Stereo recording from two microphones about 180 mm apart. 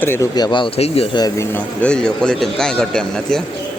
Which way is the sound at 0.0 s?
15° left (ahead or behind).